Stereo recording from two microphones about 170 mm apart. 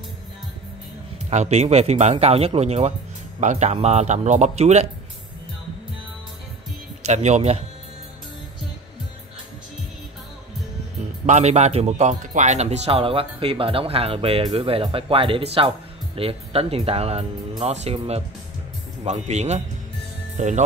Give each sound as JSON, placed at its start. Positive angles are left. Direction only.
{"t": 1.3, "sound": "speech", "side_deg": -40}
{"t": 7.0, "sound": "speech", "side_deg": -40}
{"t": 11.2, "sound": "speech", "side_deg": -40}